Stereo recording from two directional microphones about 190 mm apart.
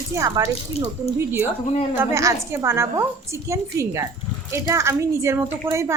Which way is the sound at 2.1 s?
15° right (ahead or behind).